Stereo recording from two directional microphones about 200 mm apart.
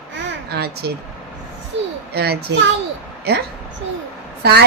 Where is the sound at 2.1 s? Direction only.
50° right (ahead or behind).